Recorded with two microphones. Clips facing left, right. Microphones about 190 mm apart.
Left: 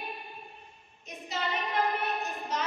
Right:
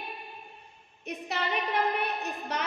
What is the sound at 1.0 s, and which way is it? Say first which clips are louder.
Speech: right 4 dB; 65° right (ahead or behind).